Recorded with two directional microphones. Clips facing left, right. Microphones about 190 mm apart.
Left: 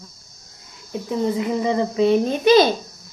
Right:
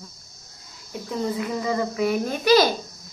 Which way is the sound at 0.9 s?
20° left (ahead or behind).